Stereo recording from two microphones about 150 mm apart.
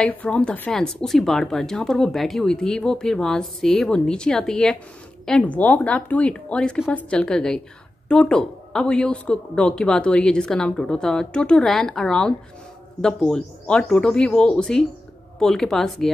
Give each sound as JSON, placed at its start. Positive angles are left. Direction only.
{"t": 0.0, "sound": "speech", "side_deg": 10}